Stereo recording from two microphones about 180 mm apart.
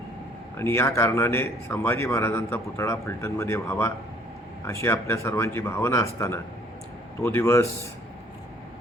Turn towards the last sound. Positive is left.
turn(degrees=15)  # may be behind; listen again after turning